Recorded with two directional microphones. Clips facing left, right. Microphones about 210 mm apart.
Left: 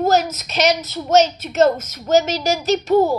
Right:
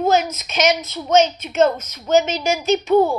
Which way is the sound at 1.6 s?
45° left (ahead or behind).